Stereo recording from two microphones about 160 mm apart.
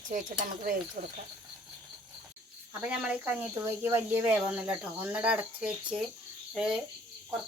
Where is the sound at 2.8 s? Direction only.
10° right (ahead or behind).